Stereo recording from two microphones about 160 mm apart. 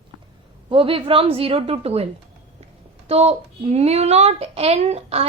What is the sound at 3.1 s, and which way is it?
Speech, 40° right (ahead or behind).